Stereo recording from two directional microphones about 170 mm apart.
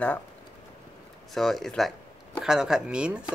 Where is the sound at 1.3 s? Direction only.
Centre (ahead or behind).